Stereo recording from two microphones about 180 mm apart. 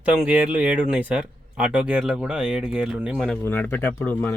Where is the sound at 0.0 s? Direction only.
5° right (ahead or behind).